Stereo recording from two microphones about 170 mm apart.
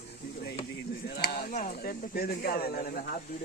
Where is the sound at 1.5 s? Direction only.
50° left (ahead or behind).